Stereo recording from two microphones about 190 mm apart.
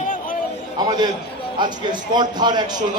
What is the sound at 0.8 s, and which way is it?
A man's voice, 20° right (ahead or behind).